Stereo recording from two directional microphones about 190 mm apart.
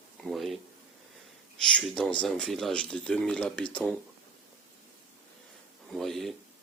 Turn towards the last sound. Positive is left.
turn(degrees=0)  # may be behind; listen again after turning